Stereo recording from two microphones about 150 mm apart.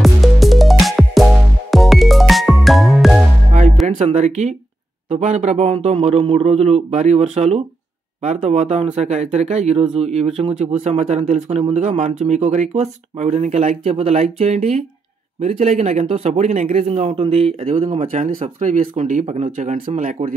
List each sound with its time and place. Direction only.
0.0 s music: centre (ahead or behind)
3.8 s speech: 50° right (ahead or behind)
6.2 s speech: 40° right (ahead or behind)
18.0 s speech: 65° right (ahead or behind)